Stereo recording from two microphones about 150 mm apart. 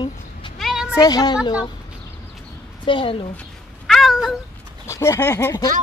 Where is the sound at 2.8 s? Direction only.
35° left (ahead or behind).